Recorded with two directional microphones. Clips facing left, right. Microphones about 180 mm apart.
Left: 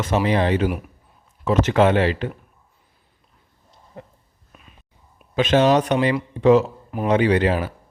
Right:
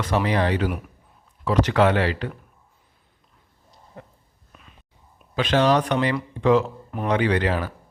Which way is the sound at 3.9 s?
20° left (ahead or behind).